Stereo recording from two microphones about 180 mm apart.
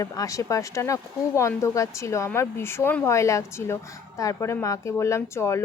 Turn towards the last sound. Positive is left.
turn(degrees=15)  # may be behind; listen again after turning